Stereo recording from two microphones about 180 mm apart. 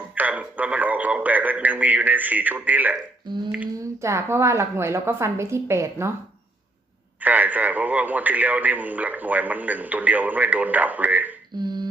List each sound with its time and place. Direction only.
0.1 s a man's voice: 10° right (ahead or behind)
7.2 s speech: 10° right (ahead or behind)
11.5 s finger snapping: 25° right (ahead or behind)